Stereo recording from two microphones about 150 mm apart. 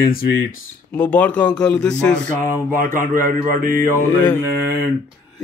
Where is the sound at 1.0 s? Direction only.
10° left (ahead or behind).